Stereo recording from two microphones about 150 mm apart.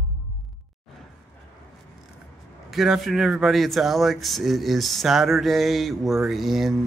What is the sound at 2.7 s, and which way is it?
Speech, centre (ahead or behind).